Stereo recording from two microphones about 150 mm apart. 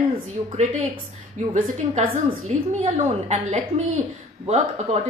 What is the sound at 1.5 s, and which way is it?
A woman's voice, 50° right (ahead or behind).